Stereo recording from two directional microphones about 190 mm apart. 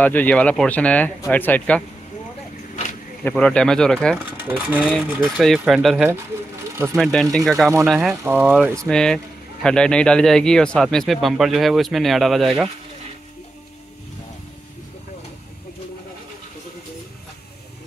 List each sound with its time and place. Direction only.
0.0 s speech: 10° left (ahead or behind)
2.7 s a sound: 40° left (ahead or behind)
3.3 s speech: 5° left (ahead or behind)
4.3 s speech: 10° right (ahead or behind)
8.1 s speech: 15° right (ahead or behind)
8.8 s speech: 5° left (ahead or behind)